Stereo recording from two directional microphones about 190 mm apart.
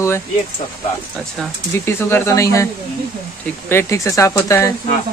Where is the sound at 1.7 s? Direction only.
15° left (ahead or behind).